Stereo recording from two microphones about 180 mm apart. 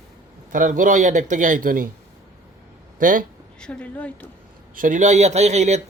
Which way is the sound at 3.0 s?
50° right (ahead or behind).